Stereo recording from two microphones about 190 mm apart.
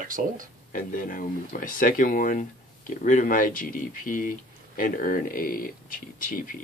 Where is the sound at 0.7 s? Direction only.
45° left (ahead or behind).